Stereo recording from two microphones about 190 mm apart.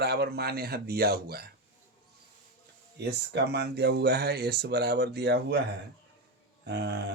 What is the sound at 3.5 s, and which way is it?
Speech, 60° right (ahead or behind).